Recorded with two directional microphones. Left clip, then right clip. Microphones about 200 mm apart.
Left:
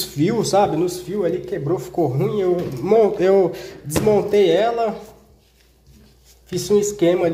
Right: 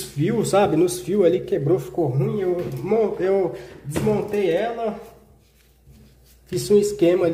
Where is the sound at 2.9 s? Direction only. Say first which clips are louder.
Left 5 dB; 15° left (ahead or behind).